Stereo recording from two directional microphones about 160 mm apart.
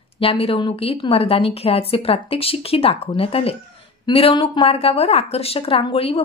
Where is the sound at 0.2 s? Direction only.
35° left (ahead or behind).